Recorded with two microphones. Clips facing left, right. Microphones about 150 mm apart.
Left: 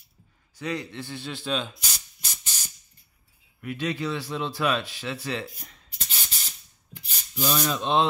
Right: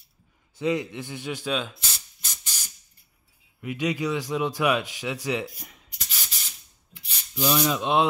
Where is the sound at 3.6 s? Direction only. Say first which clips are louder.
Right 2 dB; 15° right (ahead or behind).